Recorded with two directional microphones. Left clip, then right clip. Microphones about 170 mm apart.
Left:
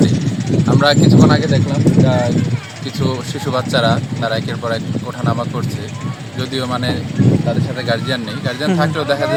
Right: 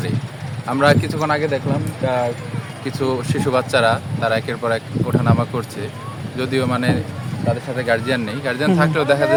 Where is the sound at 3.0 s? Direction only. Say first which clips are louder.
Right 1 dB; 15° right (ahead or behind).